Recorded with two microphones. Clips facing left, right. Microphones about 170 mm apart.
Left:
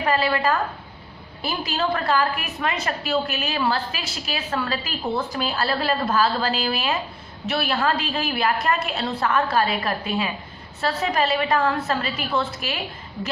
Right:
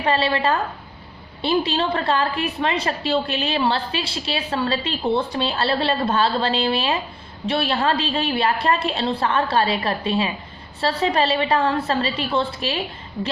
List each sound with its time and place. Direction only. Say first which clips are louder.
0.0 s a woman's voice: right 1 dB; 30° right (ahead or behind)